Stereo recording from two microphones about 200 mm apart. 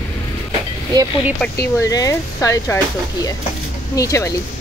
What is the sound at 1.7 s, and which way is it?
Speech, 15° left (ahead or behind).